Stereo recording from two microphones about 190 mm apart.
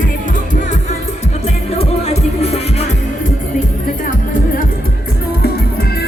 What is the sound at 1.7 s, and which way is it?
Music, 35° left (ahead or behind).